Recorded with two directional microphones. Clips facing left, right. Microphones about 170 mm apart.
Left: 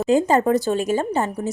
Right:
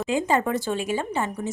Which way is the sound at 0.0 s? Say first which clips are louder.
Left 6 dB; 40° left (ahead or behind).